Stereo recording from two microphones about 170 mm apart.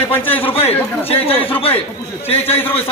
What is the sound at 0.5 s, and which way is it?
Speech, 35° left (ahead or behind).